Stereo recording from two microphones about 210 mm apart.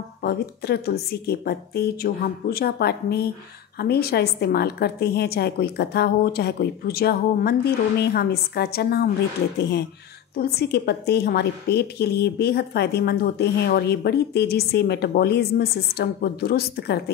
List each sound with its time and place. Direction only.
0.2 s a woman's voice: 50° left (ahead or behind)